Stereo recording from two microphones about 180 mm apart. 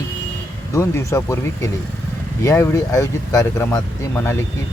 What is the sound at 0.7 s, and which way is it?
Speech, 15° left (ahead or behind).